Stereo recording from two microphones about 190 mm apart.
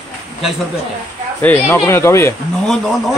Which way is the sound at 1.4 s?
10° left (ahead or behind).